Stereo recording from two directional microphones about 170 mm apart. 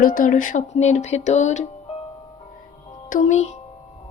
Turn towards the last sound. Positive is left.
turn(degrees=40)  # may be behind; listen again after turning